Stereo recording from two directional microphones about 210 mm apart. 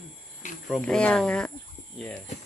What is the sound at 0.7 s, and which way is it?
Speech, 5° left (ahead or behind).